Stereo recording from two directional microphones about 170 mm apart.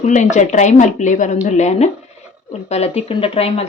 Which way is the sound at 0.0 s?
45° left (ahead or behind).